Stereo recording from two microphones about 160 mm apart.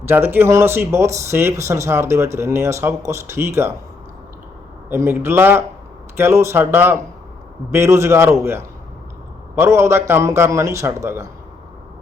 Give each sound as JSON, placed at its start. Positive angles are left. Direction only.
{"t": 0.1, "sound": "speech", "side_deg": -15}
{"t": 4.9, "sound": "speech", "side_deg": -15}